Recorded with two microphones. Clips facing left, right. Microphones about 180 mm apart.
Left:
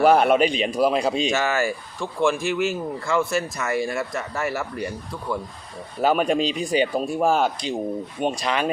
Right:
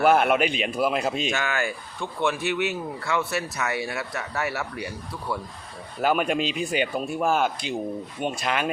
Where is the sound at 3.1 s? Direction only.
5° right (ahead or behind).